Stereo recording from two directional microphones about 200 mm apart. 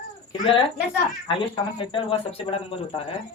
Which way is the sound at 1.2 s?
25° left (ahead or behind).